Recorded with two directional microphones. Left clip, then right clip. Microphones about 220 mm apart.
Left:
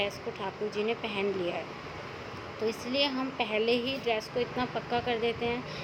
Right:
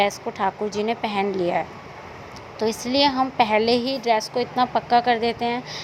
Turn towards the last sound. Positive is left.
turn(degrees=-35)  # may be behind; listen again after turning